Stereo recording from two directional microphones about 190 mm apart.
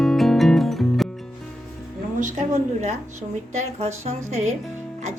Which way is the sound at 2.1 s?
40° right (ahead or behind).